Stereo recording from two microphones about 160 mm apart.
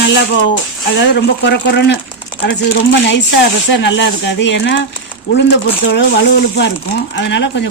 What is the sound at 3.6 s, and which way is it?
Speech, 90° left.